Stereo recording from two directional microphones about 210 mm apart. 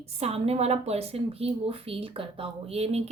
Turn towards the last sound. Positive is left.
turn(degrees=-30)  # may be behind; listen again after turning